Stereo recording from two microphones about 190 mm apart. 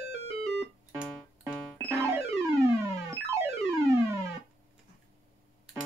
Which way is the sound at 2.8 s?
15° right (ahead or behind).